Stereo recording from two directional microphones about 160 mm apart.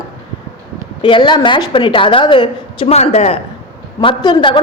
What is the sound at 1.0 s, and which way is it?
A woman's voice, 30° left (ahead or behind).